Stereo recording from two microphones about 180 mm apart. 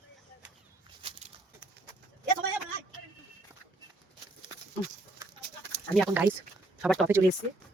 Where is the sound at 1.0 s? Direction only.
35° right (ahead or behind).